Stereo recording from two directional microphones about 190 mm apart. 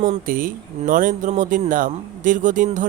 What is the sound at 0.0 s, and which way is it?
Speech, 45° right (ahead or behind).